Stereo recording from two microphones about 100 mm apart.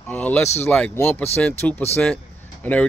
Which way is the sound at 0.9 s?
25° left (ahead or behind).